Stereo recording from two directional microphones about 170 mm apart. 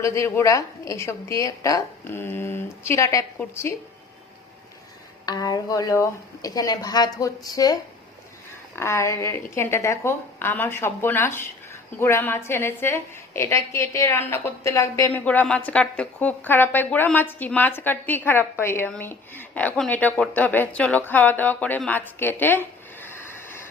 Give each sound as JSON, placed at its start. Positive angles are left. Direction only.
{"t": 0.0, "sound": "a woman's voice", "side_deg": 15}
{"t": 5.2, "sound": "a woman's voice", "side_deg": 25}